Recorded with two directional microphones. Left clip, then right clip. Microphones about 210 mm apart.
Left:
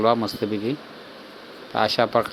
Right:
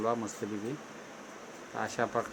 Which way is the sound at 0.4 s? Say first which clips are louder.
Left 12 dB; 35° left (ahead or behind).